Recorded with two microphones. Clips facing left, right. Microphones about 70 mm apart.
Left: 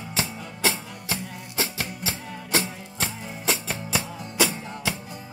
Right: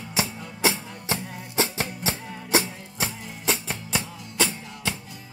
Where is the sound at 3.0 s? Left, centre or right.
Centre.